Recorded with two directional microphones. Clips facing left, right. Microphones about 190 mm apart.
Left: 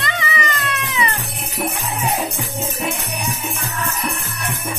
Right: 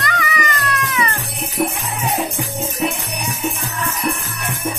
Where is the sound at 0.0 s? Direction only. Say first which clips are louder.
Right 2 dB; 25° left (ahead or behind).